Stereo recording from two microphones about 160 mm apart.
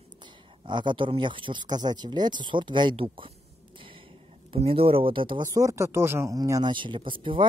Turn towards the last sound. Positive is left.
turn(degrees=-30)  # may be behind; listen again after turning